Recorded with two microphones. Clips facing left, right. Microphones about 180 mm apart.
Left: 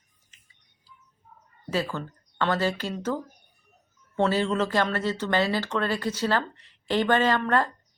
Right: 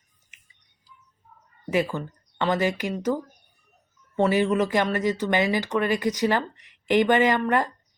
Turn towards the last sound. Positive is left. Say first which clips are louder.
# right 2 dB
turn(degrees=-15)  # may be behind; listen again after turning